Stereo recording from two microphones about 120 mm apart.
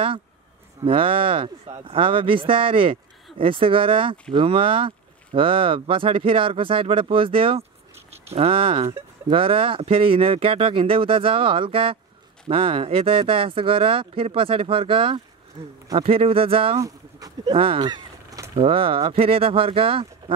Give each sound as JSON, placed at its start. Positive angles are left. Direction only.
{"t": 0.8, "sound": "speech", "side_deg": -50}